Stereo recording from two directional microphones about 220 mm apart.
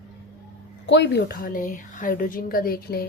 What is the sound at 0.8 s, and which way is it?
A woman's voice, 50° left (ahead or behind).